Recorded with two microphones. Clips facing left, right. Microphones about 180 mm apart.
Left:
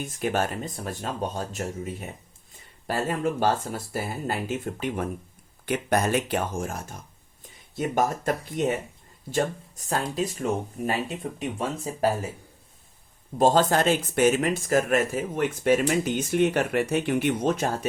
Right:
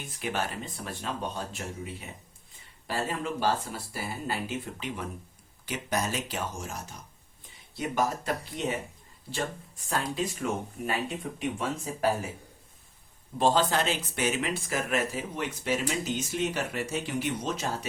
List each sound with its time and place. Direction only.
0.0 s speech: 45° left (ahead or behind)
13.4 s speech: 45° left (ahead or behind)